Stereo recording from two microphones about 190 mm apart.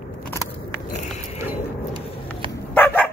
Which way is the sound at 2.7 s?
10° left (ahead or behind).